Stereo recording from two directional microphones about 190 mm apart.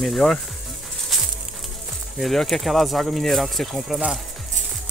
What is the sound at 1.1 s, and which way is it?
Music, centre (ahead or behind).